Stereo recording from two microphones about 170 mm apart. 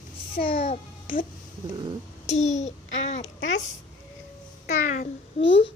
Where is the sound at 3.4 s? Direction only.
90° left.